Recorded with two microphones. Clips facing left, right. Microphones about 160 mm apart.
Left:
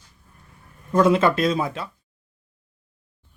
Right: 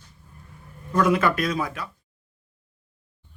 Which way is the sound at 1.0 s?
25° left (ahead or behind).